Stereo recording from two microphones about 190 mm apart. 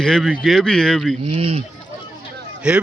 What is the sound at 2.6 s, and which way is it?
Speech, 5° right (ahead or behind).